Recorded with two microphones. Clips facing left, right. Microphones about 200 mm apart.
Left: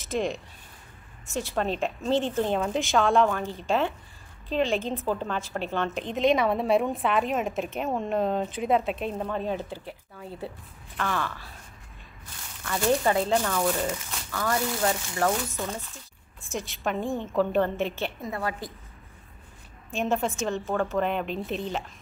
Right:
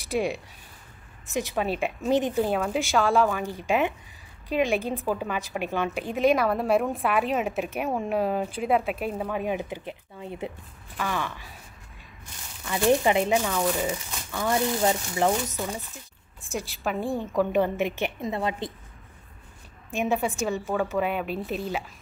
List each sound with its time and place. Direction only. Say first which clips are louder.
0.1 s a woman's voice: right 1 dB; 10° right (ahead or behind)
3.4 s a woman's voice: right 1 dB; 15° right (ahead or behind)
12.6 s speech: right 2 dB; 15° right (ahead or behind)
13.8 s speech: right 1 dB; 15° right (ahead or behind)
16.3 s a woman's voice: right 1 dB; centre (ahead or behind)
17.4 s speech: right 1 dB; 15° right (ahead or behind)
19.9 s a woman's voice: right 1 dB; 15° right (ahead or behind)
20.3 s a woman's voice: right 1 dB; centre (ahead or behind)